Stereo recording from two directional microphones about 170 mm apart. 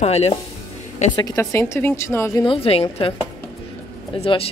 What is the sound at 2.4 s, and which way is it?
Speech, 35° left (ahead or behind).